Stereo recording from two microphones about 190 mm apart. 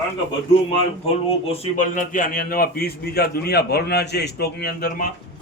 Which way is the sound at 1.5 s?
35° left (ahead or behind).